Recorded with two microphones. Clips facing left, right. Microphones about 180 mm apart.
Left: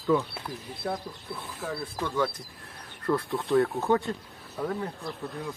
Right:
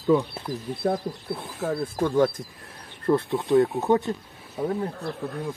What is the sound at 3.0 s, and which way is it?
Speech, 20° right (ahead or behind).